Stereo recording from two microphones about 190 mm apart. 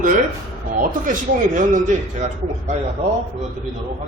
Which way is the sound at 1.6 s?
40° right (ahead or behind).